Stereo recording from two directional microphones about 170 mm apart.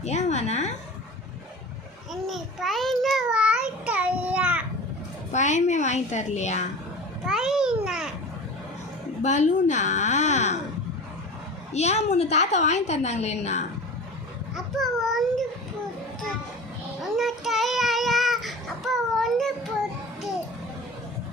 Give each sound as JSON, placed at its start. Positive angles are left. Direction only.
{"t": 0.0, "sound": "a woman's voice", "side_deg": 40}
{"t": 2.2, "sound": "child singing", "side_deg": 0}
{"t": 5.3, "sound": "a woman's voice", "side_deg": 45}
{"t": 7.3, "sound": "a child's voice", "side_deg": -5}
{"t": 9.2, "sound": "a woman's voice", "side_deg": 45}
{"t": 11.7, "sound": "a woman's voice", "side_deg": 40}
{"t": 14.5, "sound": "a child's voice", "side_deg": 0}
{"t": 17.0, "sound": "child singing", "side_deg": 0}